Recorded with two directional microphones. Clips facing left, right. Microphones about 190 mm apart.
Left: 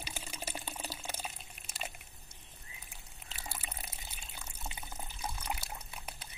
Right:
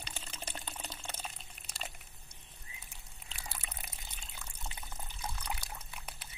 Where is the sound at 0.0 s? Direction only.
10° left (ahead or behind).